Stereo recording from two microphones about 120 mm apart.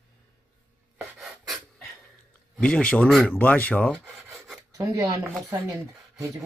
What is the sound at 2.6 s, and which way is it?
Speech, 10° left (ahead or behind).